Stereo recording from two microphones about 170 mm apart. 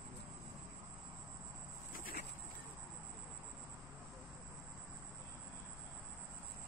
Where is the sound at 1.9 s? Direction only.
60° left (ahead or behind).